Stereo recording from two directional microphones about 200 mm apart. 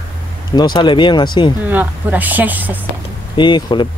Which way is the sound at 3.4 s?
25° left (ahead or behind).